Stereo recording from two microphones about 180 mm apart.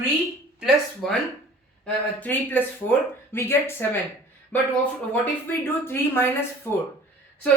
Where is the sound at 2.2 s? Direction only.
10° left (ahead or behind).